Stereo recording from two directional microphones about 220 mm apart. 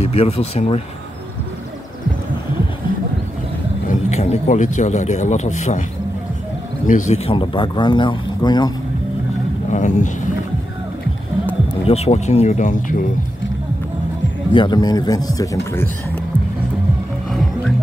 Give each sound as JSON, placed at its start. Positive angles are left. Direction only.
{"t": 0.1, "sound": "speech", "side_deg": 30}
{"t": 3.9, "sound": "a man's voice", "side_deg": 30}
{"t": 6.9, "sound": "speech", "side_deg": 35}
{"t": 9.7, "sound": "a man's voice", "side_deg": 35}
{"t": 11.9, "sound": "a man's voice", "side_deg": 30}
{"t": 14.5, "sound": "speech", "side_deg": 20}
{"t": 17.3, "sound": "music", "side_deg": 0}